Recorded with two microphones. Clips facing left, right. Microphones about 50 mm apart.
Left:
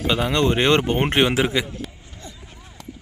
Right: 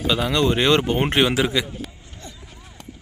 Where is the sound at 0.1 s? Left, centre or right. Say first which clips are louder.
Even; left.